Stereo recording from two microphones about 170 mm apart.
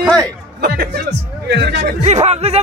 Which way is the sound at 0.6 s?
75° right (ahead or behind).